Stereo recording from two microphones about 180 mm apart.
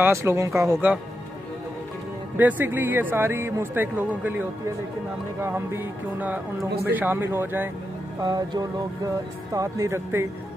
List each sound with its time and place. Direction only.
0.0 s speech: 15° right (ahead or behind)
2.3 s speech: 10° right (ahead or behind)
5.4 s speech: 15° right (ahead or behind)
8.2 s music: 20° right (ahead or behind)
9.5 s speech: 20° right (ahead or behind)